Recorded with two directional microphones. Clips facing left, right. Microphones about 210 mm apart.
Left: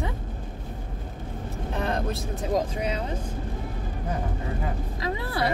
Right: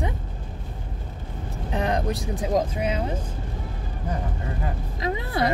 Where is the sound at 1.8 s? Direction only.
15° right (ahead or behind).